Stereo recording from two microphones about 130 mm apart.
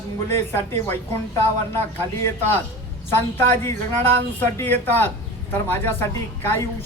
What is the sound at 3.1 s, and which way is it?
A man's voice, 15° left (ahead or behind).